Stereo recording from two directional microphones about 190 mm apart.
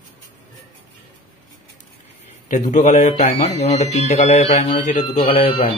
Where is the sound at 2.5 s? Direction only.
40° left (ahead or behind).